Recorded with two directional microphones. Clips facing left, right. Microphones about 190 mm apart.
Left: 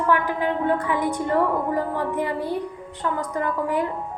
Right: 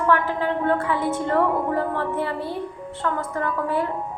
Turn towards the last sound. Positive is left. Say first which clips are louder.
# even
turn(degrees=15)  # may be behind; listen again after turning